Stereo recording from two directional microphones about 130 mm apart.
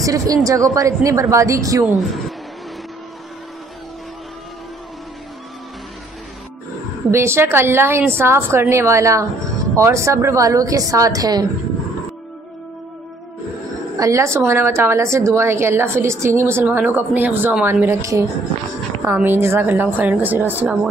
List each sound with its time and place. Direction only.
0.0 s a woman's voice: 25° right (ahead or behind)
2.0 s speech: centre (ahead or behind)
7.1 s a woman's voice: 20° right (ahead or behind)
13.9 s a woman's voice: 25° right (ahead or behind)